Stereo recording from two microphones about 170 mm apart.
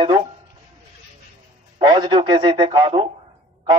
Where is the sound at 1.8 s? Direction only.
25° right (ahead or behind).